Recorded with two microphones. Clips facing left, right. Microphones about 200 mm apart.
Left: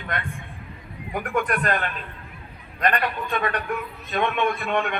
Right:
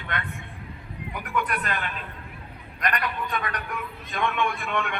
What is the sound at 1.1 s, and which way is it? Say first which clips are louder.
Speech: left 4 dB; 50° left (ahead or behind).